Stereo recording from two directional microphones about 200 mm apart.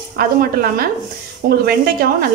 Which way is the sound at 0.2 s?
45° right (ahead or behind).